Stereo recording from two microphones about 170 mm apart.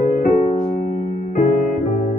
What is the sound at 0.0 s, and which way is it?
Music, 45° left (ahead or behind).